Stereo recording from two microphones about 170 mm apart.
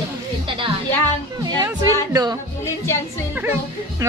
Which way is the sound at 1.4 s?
20° right (ahead or behind).